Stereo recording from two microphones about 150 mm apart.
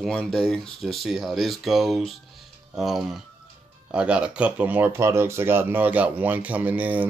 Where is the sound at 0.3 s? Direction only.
5° left (ahead or behind).